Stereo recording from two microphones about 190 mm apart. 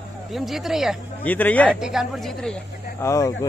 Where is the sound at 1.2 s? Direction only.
10° left (ahead or behind).